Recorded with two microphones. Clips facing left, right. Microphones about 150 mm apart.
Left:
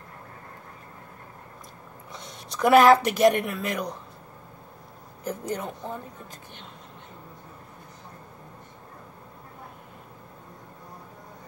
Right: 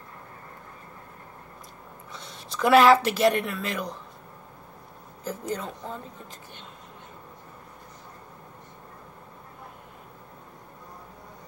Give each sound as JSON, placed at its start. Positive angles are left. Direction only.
{"t": 2.5, "sound": "a woman's voice", "side_deg": 15}
{"t": 5.4, "sound": "a woman's voice", "side_deg": 15}